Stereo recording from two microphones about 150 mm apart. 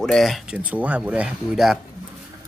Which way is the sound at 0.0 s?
Centre (ahead or behind).